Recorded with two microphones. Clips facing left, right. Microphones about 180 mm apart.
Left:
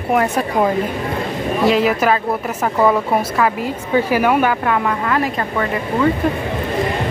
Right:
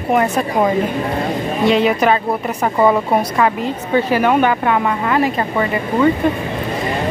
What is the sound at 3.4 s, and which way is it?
Speech, 10° left (ahead or behind).